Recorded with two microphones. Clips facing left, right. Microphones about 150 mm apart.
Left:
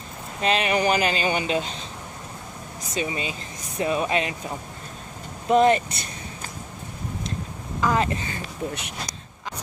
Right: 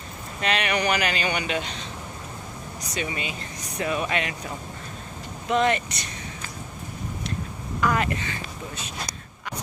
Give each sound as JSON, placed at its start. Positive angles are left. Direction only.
{"t": 0.4, "sound": "speech", "side_deg": 30}
{"t": 2.9, "sound": "speech", "side_deg": 30}
{"t": 5.5, "sound": "speech", "side_deg": 40}
{"t": 7.8, "sound": "speech", "side_deg": 25}